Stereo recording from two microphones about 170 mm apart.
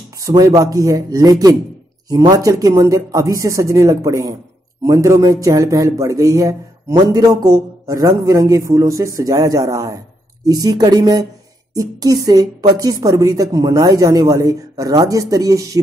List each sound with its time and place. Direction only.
0.2 s speech: 20° right (ahead or behind)